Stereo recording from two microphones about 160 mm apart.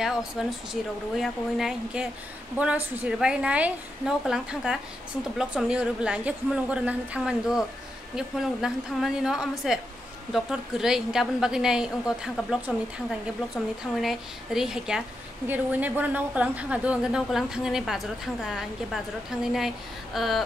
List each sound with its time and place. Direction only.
0.0 s a woman's voice: 5° right (ahead or behind)